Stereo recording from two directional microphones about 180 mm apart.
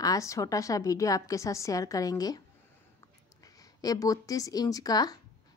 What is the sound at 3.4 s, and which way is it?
A woman's voice, 20° left (ahead or behind).